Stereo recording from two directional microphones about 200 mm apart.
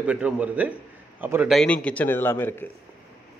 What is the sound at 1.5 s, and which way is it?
A man's voice, 5° left (ahead or behind).